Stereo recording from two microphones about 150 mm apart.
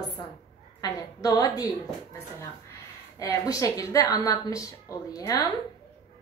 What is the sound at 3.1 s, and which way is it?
A woman's voice, 25° left (ahead or behind).